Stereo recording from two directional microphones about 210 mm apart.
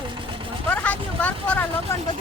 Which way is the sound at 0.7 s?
5° left (ahead or behind).